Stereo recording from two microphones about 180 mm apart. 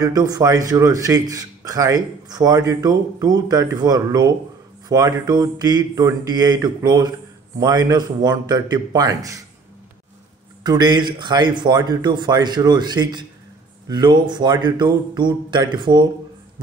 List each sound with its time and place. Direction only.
0.0 s speech: 20° right (ahead or behind)
10.6 s speech: 25° right (ahead or behind)